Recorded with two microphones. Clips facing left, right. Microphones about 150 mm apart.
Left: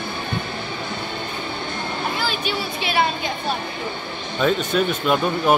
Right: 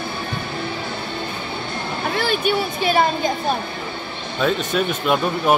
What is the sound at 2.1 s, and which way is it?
Speech, 55° right (ahead or behind).